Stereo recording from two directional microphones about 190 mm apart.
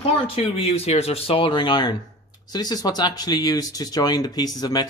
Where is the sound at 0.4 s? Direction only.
30° left (ahead or behind).